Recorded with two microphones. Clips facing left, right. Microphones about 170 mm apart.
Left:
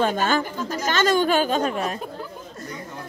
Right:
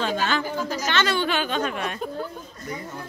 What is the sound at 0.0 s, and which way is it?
Speech, 50° left (ahead or behind).